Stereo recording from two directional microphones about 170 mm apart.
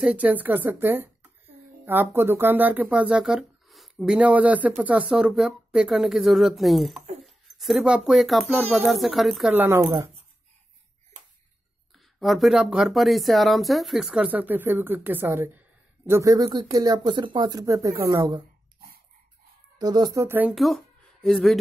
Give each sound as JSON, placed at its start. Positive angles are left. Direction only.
{"t": 0.0, "sound": "a woman's voice", "side_deg": -5}
{"t": 11.9, "sound": "speech", "side_deg": 0}
{"t": 19.8, "sound": "speech", "side_deg": -25}
{"t": 20.5, "sound": "speech", "side_deg": 0}